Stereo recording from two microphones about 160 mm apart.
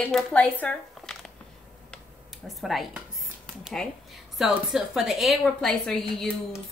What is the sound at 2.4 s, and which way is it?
Speech, centre (ahead or behind).